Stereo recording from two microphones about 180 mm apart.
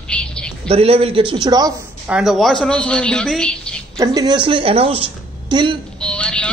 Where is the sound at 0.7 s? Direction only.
35° right (ahead or behind).